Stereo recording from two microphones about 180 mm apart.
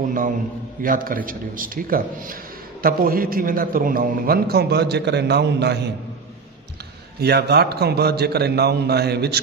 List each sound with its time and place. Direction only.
0.8 s a man's voice: 50° right (ahead or behind); by 5.9 s 70° right (ahead or behind)
7.2 s a man's voice: 65° right (ahead or behind)